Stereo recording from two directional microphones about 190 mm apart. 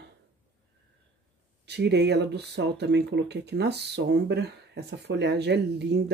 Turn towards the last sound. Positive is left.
turn(degrees=-60)  # may be behind; listen again after turning